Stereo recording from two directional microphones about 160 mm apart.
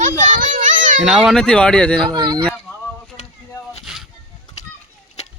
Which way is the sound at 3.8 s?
Centre (ahead or behind).